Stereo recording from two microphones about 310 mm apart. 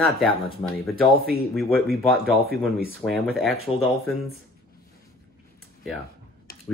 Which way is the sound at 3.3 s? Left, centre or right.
Centre.